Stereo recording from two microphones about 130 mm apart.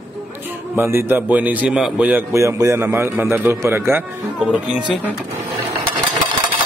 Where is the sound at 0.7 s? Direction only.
20° right (ahead or behind).